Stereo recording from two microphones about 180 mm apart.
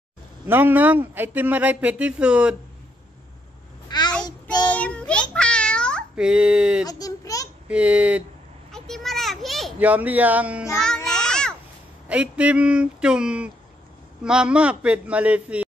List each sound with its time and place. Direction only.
0.5 s speech: 10° right (ahead or behind)
3.9 s child singing: 25° left (ahead or behind)
4.6 s child singing: 5° left (ahead or behind)
5.3 s cat: 5° left (ahead or behind)
6.1 s speech: 5° right (ahead or behind)
6.9 s a sound: 20° left (ahead or behind)
7.6 s speech: 5° right (ahead or behind)
8.7 s children playing: centre (ahead or behind)
12.1 s speech: 5° right (ahead or behind)